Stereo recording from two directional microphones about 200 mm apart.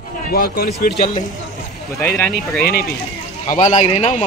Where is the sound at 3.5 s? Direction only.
35° left (ahead or behind).